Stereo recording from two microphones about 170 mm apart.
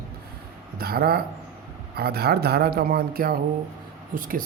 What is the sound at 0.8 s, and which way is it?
Speech, 65° right (ahead or behind).